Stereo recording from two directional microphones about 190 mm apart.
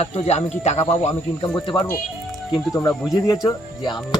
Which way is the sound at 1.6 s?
25° left (ahead or behind).